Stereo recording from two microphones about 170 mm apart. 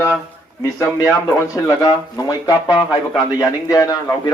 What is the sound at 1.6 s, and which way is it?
Speech, 20° left (ahead or behind).